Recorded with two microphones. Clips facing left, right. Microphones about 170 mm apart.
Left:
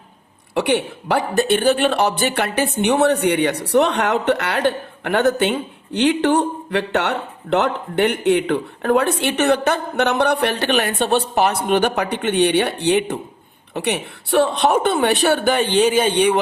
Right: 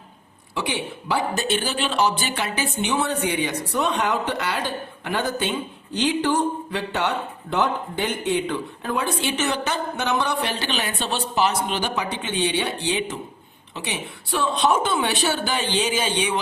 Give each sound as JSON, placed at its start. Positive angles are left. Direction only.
{"t": 0.5, "sound": "speech", "side_deg": 60}